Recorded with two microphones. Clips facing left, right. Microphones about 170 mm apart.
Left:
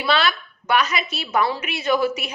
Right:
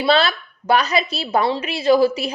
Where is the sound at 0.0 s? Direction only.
35° right (ahead or behind).